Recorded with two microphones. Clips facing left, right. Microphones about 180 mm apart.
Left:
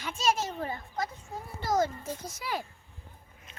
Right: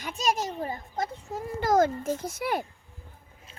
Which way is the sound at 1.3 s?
50° right (ahead or behind).